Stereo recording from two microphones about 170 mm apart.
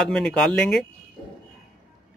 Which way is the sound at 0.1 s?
5° left (ahead or behind).